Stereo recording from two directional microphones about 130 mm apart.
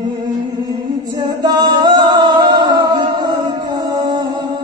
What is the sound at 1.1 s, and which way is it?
Singing, 35° right (ahead or behind).